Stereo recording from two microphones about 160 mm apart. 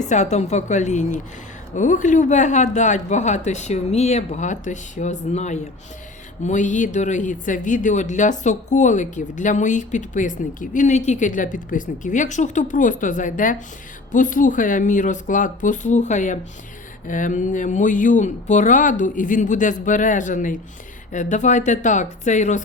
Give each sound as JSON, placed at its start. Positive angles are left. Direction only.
{"t": 0.1, "sound": "speech", "side_deg": 45}